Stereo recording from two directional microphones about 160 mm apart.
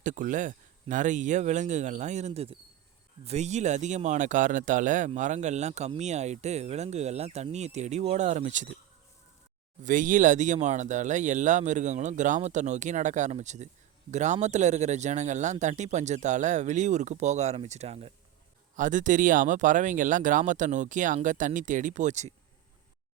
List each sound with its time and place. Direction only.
0.0 s speech: 55° right (ahead or behind)
9.8 s speech: 55° right (ahead or behind); by 18.1 s 40° right (ahead or behind)
18.8 s speech: 55° right (ahead or behind)